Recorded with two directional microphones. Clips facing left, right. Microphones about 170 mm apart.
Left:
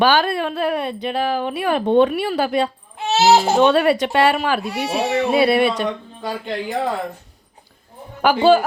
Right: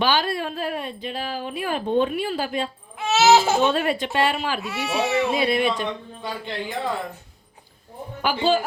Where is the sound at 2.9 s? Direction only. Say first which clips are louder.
Left 2 dB; 35° left (ahead or behind).